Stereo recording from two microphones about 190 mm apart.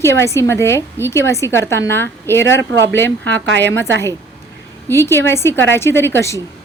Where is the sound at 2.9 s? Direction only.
10° left (ahead or behind).